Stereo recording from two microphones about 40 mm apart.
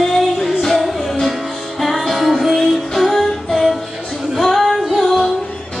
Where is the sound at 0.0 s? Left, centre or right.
Centre.